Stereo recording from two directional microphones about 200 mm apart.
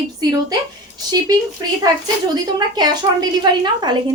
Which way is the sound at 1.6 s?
20° right (ahead or behind).